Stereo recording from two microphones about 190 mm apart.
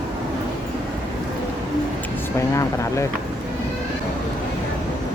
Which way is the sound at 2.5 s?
15° left (ahead or behind).